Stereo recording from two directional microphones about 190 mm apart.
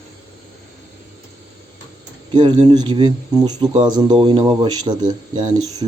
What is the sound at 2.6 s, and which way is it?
Speech, 25° right (ahead or behind).